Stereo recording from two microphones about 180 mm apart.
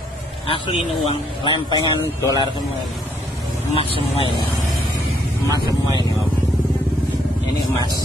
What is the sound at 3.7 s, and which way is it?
Speech, 30° left (ahead or behind).